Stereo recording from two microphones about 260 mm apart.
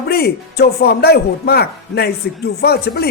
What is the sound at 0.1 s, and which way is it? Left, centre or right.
Speech, left.